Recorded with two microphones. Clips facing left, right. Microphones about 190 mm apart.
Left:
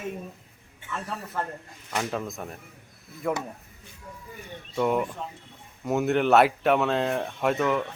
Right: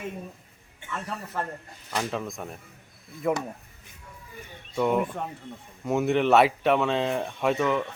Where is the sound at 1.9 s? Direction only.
Centre (ahead or behind).